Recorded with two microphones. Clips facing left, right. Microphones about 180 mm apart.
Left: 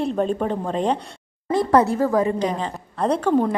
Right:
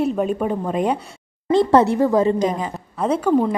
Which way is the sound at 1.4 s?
25° right (ahead or behind).